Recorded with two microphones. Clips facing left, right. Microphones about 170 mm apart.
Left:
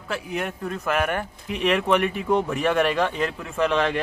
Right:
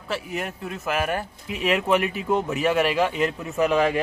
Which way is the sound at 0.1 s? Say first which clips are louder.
Left 1 dB; centre (ahead or behind).